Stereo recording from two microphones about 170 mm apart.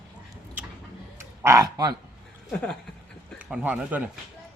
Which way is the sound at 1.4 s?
20° right (ahead or behind).